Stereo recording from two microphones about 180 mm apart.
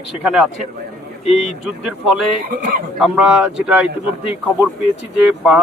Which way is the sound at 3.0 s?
5° right (ahead or behind).